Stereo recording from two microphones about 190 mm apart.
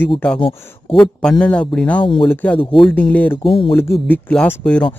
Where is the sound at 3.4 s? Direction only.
30° left (ahead or behind).